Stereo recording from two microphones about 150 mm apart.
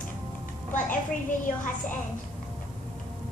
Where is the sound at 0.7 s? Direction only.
60° left (ahead or behind).